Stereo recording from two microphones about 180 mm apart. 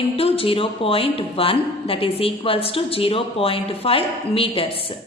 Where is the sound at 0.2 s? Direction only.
30° left (ahead or behind).